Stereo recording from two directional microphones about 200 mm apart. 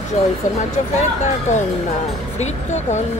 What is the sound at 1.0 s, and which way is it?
Speech, 35° left (ahead or behind).